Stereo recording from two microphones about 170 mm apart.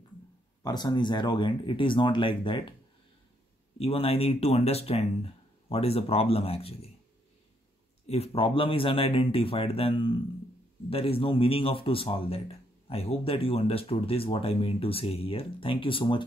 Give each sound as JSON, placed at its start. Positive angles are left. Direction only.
{"t": 0.7, "sound": "speech", "side_deg": 25}
{"t": 3.7, "sound": "speech", "side_deg": 35}
{"t": 8.1, "sound": "speech", "side_deg": 35}